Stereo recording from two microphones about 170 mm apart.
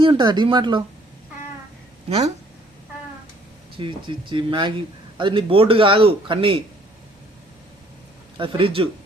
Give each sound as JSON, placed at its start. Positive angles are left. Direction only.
{"t": 0.0, "sound": "speech", "side_deg": -30}
{"t": 2.0, "sound": "a man's voice", "side_deg": -40}
{"t": 3.8, "sound": "a man's voice", "side_deg": -30}
{"t": 8.4, "sound": "a man's voice", "side_deg": -30}